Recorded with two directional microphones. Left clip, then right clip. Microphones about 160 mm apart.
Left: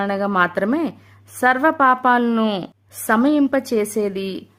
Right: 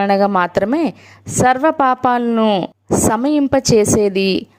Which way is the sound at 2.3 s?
15° right (ahead or behind).